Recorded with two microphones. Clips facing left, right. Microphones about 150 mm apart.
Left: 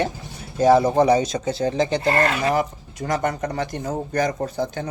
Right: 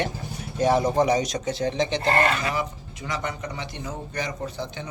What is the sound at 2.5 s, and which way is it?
Speech, 45° left (ahead or behind).